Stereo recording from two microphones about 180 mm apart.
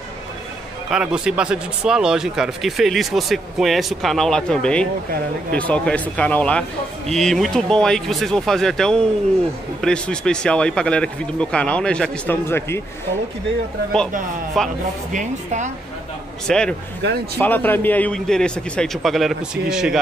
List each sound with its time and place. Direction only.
0.9 s speech: 5° right (ahead or behind); by 12.8 s 15° left (ahead or behind)
14.6 s speech: centre (ahead or behind)
15.1 s a woman's voice: 40° right (ahead or behind)
16.4 s speech: 5° left (ahead or behind)